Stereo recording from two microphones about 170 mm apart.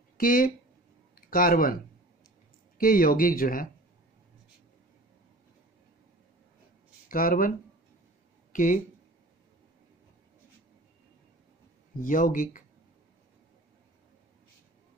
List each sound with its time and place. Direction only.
0.2 s speech: 55° left (ahead or behind)
2.8 s speech: 55° left (ahead or behind)
7.1 s speech: 55° left (ahead or behind)
8.5 s speech: 50° left (ahead or behind)
12.0 s speech: 50° left (ahead or behind)